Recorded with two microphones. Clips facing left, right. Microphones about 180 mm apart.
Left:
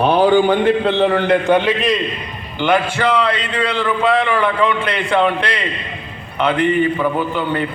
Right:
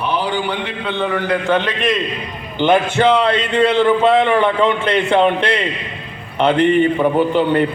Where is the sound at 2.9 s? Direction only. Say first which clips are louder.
Right 3 dB; 25° right (ahead or behind).